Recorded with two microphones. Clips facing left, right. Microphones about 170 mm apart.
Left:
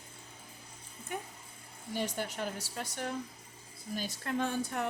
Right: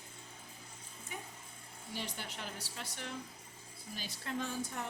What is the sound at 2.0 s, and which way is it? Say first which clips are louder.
A woman's voice: left 9 dB; 45° left (ahead or behind).